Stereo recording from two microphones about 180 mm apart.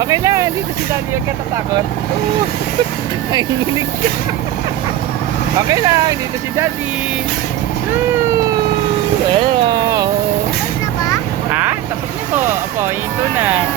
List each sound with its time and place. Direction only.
0.0 s speech: 15° right (ahead or behind)
5.6 s speech: 20° right (ahead or behind)
9.3 s speech: 25° right (ahead or behind)
13.3 s speech: 10° right (ahead or behind)